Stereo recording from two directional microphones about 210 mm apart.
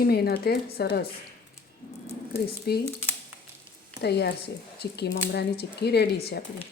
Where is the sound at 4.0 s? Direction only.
50° left (ahead or behind).